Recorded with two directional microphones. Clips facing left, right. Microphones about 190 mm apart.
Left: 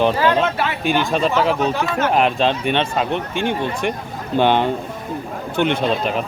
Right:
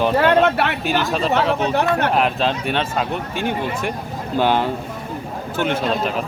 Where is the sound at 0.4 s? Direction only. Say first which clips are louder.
Right 3 dB; 65° right (ahead or behind).